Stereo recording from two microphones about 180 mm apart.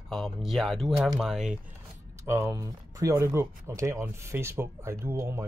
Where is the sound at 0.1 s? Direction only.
Centre (ahead or behind).